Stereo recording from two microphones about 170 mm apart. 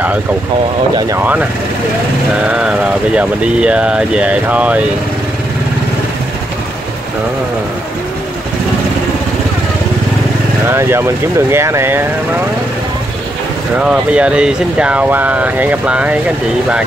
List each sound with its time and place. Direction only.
0.9 s speech: 15° right (ahead or behind)
2.4 s speech: 5° right (ahead or behind)
10.7 s speech: 15° right (ahead or behind)
13.7 s speech: 5° right (ahead or behind)